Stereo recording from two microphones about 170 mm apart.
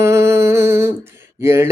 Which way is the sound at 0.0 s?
15° right (ahead or behind).